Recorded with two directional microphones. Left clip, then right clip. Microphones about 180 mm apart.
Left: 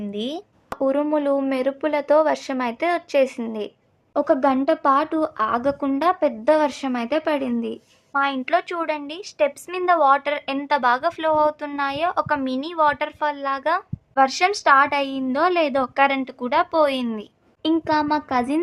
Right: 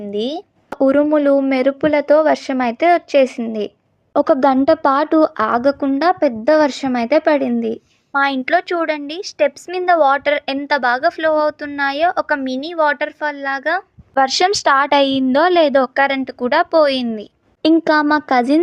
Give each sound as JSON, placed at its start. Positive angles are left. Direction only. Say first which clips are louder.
{"t": 0.1, "sound": "a woman's voice", "louder": "right 10 dB", "side_deg": -25}
{"t": 4.1, "sound": "a woman's voice", "louder": "right 6 dB", "side_deg": -40}
{"t": 14.2, "sound": "a woman's voice", "louder": "right 4 dB", "side_deg": -40}